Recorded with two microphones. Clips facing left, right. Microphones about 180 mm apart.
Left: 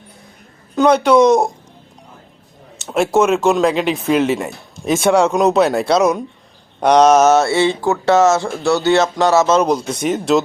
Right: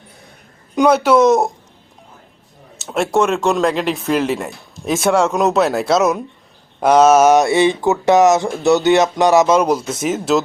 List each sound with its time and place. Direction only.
0.8 s speech: 5° right (ahead or behind)
2.7 s speech: centre (ahead or behind)